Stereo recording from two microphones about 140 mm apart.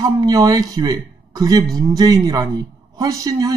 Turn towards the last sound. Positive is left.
turn(degrees=-25)  # may be behind; listen again after turning